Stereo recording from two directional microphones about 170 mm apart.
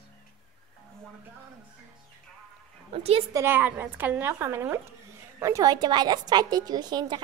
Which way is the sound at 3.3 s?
10° right (ahead or behind).